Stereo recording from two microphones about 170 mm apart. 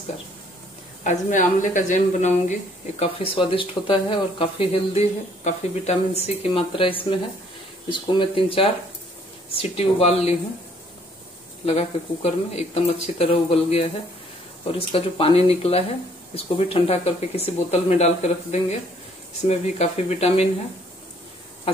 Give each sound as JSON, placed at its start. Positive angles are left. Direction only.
{"t": 1.0, "sound": "speech", "side_deg": 45}
{"t": 3.0, "sound": "speech", "side_deg": 35}
{"t": 11.6, "sound": "speech", "side_deg": 40}